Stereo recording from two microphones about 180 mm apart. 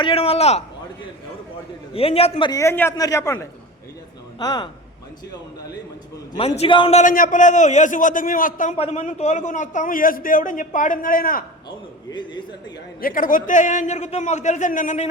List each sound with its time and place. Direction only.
0.0 s a man's voice: 30° left (ahead or behind)
1.9 s a man's voice: 30° left (ahead or behind)
2.5 s a man's voice: 15° left (ahead or behind)
6.3 s a man's voice: 30° left (ahead or behind)
7.0 s a man's voice: 50° left (ahead or behind)
8.7 s a man's voice: 35° left (ahead or behind); by 11.4 s 55° left (ahead or behind)
13.0 s a man's voice: 50° left (ahead or behind)